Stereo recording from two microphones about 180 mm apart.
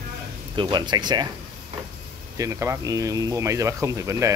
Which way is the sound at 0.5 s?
25° right (ahead or behind).